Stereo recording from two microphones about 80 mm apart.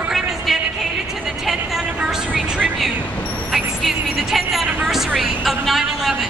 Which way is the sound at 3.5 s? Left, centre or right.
Centre.